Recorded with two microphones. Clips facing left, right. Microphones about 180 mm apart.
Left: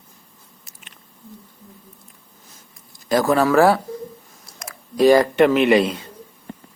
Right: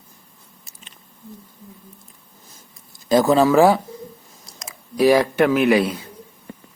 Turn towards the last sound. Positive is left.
turn(degrees=-5)  # may be behind; listen again after turning